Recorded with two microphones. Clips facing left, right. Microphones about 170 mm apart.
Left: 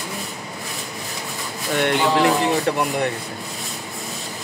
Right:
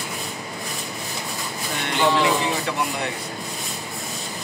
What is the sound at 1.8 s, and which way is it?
Speech, 55° left (ahead or behind).